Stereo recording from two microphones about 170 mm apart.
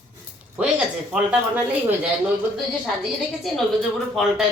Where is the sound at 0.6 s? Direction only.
5° right (ahead or behind).